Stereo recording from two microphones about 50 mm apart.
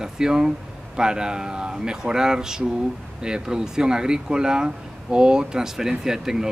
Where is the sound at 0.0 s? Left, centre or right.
Centre.